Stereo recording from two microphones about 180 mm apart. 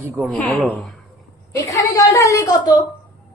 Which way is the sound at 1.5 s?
15° left (ahead or behind).